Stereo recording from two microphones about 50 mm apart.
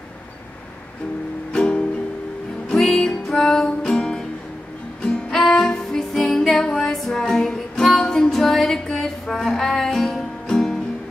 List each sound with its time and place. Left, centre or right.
1.5 s music: centre
5.3 s music: centre